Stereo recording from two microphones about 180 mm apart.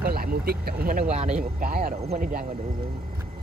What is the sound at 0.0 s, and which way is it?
Speech, 55° right (ahead or behind).